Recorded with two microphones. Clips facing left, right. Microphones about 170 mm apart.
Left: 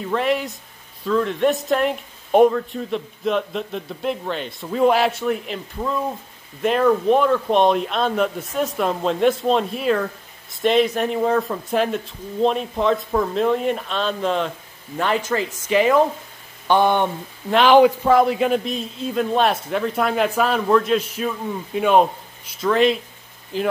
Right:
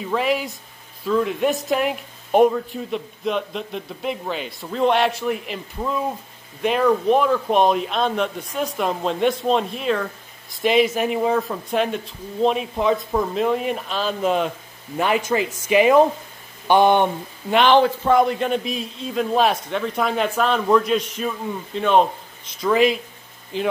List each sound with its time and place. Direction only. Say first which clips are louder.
0.0 s speech: left 1 dB; 5° right (ahead or behind)
17.5 s speech: left 3 dB; centre (ahead or behind)
21.7 s a sound: left 1 dB; 10° left (ahead or behind)
22.7 s speech: even; 5° right (ahead or behind)